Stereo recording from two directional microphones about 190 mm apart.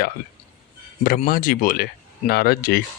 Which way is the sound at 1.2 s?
50° left (ahead or behind).